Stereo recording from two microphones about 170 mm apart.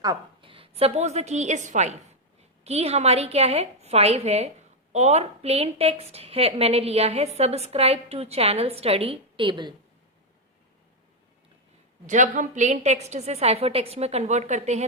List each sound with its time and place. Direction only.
0.0 s a woman's voice: 25° right (ahead or behind)
12.0 s a woman's voice: 45° right (ahead or behind)